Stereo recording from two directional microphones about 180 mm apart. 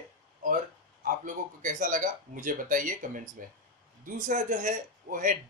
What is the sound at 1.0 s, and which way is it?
Speech, 45° right (ahead or behind).